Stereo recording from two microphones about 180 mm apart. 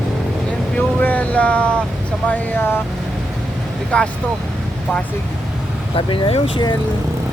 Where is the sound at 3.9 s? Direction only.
5° left (ahead or behind).